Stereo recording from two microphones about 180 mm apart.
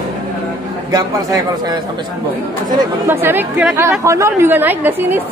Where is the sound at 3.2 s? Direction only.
10° right (ahead or behind).